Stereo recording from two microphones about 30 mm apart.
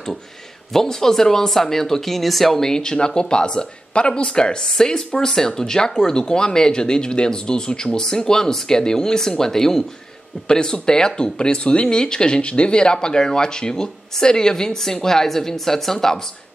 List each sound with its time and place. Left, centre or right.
0.7 s a woman's voice: centre
2.6 s a woman's voice: left
10.5 s speech: left
12.4 s a woman's voice: left; by 16.2 s centre